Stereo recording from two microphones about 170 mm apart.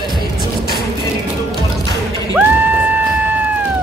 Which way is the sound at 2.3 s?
10° right (ahead or behind).